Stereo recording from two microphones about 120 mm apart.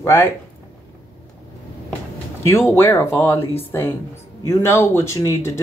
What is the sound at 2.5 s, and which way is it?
Speech, 20° left (ahead or behind).